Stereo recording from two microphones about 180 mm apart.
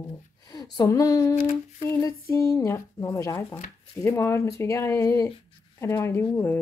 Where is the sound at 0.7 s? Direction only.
20° left (ahead or behind).